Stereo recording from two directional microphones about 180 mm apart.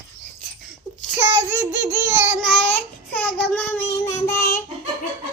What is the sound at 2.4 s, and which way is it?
Child singing, 5° left (ahead or behind).